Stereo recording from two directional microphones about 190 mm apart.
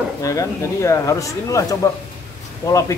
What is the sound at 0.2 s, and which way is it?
A man's voice, 15° left (ahead or behind).